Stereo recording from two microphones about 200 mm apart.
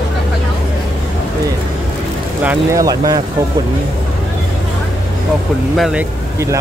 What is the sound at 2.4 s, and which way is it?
Speech, 15° right (ahead or behind).